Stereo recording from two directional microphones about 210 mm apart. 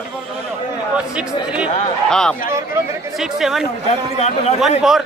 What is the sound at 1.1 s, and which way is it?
A man's voice, 5° right (ahead or behind).